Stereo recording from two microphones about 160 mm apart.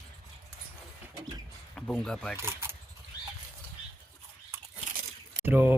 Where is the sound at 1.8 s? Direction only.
5° left (ahead or behind).